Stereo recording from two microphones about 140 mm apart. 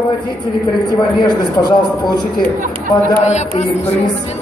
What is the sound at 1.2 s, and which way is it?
Speech, 30° left (ahead or behind).